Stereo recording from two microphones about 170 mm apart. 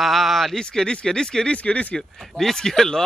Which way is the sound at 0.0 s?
Centre (ahead or behind).